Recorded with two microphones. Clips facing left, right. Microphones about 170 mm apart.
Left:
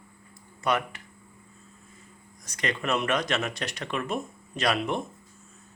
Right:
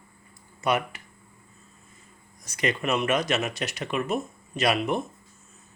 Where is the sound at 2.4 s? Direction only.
10° right (ahead or behind).